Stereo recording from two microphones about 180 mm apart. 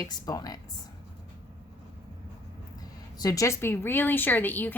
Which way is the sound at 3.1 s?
20° left (ahead or behind).